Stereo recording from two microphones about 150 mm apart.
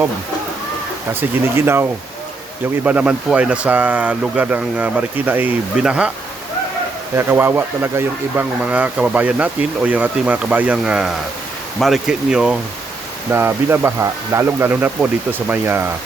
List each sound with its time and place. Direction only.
1.5 s speech: 15° right (ahead or behind)
7.2 s speech: 15° right (ahead or behind)
13.3 s speech: 15° right (ahead or behind)